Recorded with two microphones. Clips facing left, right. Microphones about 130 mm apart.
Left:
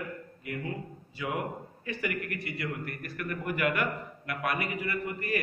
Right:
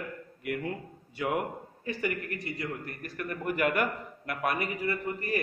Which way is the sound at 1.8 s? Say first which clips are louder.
Right 1 dB; 35° right (ahead or behind).